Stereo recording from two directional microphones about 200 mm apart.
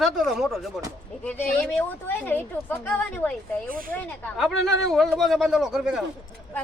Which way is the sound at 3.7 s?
45° right (ahead or behind).